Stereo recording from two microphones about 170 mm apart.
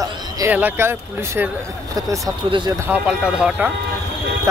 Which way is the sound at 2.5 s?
30° right (ahead or behind).